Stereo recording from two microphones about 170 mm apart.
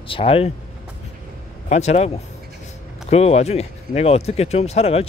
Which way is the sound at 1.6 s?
40° left (ahead or behind).